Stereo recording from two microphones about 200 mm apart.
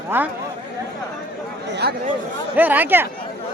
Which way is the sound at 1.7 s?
55° right (ahead or behind).